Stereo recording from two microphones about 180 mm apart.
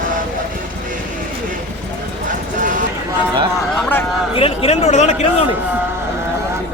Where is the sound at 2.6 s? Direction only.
45° right (ahead or behind).